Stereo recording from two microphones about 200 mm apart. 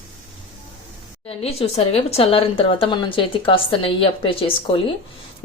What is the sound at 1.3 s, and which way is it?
A woman's voice, 30° left (ahead or behind).